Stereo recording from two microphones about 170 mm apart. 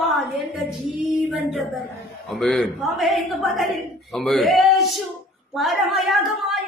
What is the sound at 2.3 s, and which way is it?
A man's voice, centre (ahead or behind).